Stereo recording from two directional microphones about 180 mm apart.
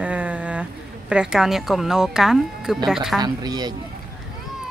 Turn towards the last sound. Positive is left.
turn(degrees=-20)  # may be behind; listen again after turning